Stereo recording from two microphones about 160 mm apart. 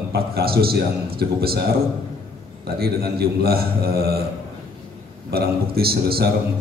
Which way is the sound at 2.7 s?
75° right (ahead or behind).